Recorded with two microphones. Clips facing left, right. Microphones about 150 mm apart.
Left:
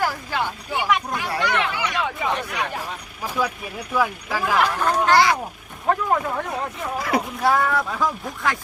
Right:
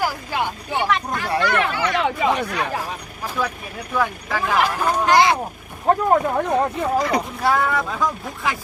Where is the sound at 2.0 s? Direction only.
90° right.